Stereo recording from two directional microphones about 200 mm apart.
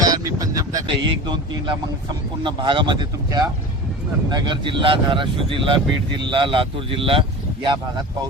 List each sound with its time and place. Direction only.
0.0 s speech: 15° right (ahead or behind)